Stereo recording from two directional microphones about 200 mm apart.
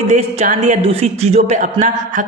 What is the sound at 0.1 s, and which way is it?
A woman's voice, 35° right (ahead or behind).